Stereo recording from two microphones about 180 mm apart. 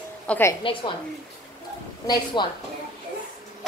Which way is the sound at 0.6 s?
30° left (ahead or behind).